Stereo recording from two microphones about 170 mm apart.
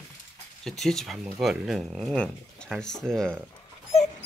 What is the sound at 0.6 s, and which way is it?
Speech, centre (ahead or behind).